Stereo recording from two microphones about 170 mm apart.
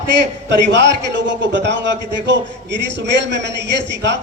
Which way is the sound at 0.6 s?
90° right.